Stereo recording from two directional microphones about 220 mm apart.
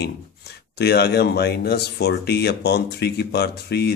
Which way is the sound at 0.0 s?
50° left (ahead or behind).